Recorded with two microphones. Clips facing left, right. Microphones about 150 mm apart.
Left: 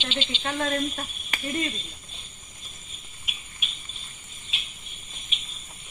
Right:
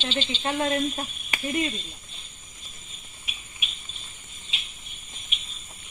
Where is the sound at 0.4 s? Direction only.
20° right (ahead or behind).